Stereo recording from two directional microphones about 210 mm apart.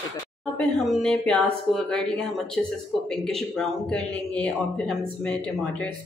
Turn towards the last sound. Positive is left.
turn(degrees=5)  # may be behind; listen again after turning